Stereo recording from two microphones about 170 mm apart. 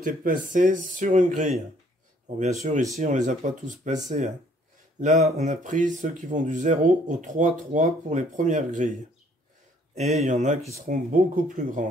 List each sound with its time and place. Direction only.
0.0 s speech: 55° right (ahead or behind)
2.6 s speech: 45° right (ahead or behind)
5.0 s speech: 40° right (ahead or behind)
9.9 s speech: 40° right (ahead or behind)
10.9 s speech: 55° right (ahead or behind)